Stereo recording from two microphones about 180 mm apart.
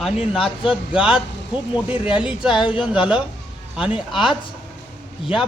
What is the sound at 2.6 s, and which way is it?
Speech, 30° left (ahead or behind).